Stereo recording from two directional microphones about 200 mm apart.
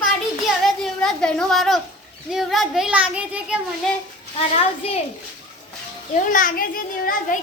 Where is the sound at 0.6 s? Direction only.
Centre (ahead or behind).